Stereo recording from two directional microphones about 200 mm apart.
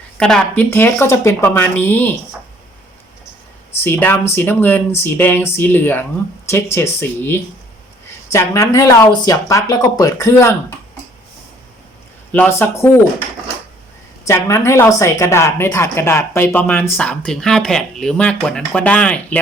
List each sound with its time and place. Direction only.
0.2 s a woman's voice: 5° left (ahead or behind)
3.8 s a woman's voice: 10° left (ahead or behind)
12.3 s a woman's voice: 10° left (ahead or behind)
14.3 s a woman's voice: 15° left (ahead or behind)